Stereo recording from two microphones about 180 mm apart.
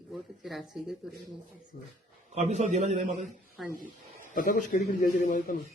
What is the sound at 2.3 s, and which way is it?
Speech, 40° right (ahead or behind).